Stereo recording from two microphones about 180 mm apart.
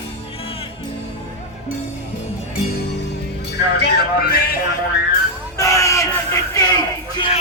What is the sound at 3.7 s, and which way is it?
Music, 65° left (ahead or behind).